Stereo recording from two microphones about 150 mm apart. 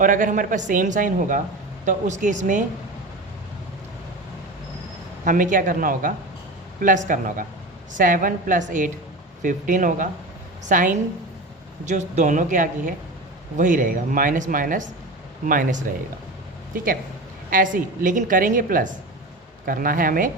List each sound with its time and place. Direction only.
0.0 s speech: 60° right (ahead or behind)
5.2 s speech: 65° right (ahead or behind)